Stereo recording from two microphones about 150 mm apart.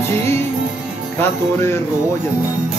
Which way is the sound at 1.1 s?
15° left (ahead or behind).